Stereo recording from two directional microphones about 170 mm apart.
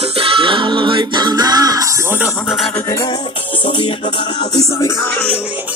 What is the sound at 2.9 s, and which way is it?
Music, 20° left (ahead or behind).